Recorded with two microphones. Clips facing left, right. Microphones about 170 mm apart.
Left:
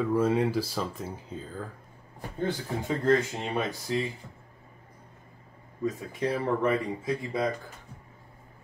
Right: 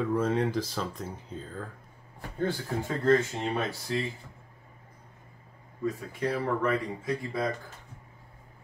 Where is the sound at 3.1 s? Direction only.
15° left (ahead or behind).